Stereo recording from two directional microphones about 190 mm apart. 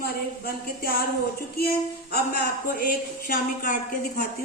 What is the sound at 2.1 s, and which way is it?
A woman's voice, 50° left (ahead or behind).